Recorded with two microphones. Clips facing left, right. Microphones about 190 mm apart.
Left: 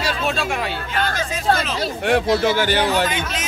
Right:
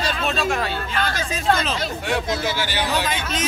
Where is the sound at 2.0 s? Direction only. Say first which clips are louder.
Left 9 dB; 60° left (ahead or behind).